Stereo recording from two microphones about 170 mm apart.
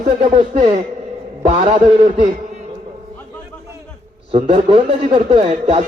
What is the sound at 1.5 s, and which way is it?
Speech, 35° right (ahead or behind).